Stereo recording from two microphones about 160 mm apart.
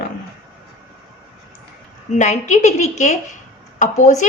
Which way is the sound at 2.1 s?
50° left (ahead or behind).